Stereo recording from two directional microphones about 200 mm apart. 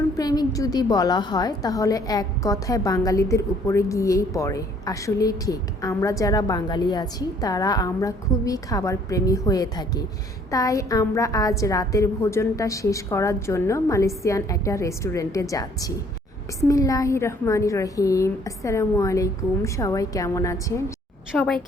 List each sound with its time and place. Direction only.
0.2 s a woman's voice: 20° left (ahead or behind)
21.3 s a woman's voice: 5° left (ahead or behind)